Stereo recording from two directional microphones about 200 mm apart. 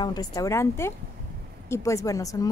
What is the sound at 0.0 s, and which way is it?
A woman's voice, 20° left (ahead or behind).